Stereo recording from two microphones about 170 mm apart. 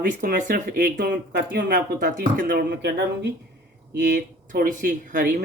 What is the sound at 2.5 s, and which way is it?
Speech, 70° right (ahead or behind).